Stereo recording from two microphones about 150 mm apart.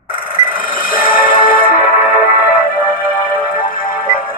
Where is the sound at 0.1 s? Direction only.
70° left (ahead or behind).